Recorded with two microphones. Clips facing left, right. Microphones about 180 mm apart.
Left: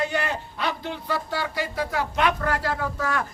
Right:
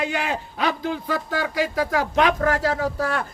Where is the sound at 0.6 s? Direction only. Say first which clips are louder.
Right 6 dB; 90° right.